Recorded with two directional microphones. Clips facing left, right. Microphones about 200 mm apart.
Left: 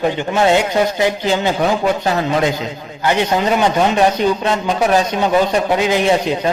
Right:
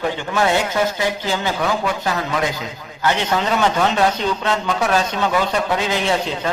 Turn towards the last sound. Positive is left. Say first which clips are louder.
# left 5 dB
turn(degrees=15)  # may be behind; listen again after turning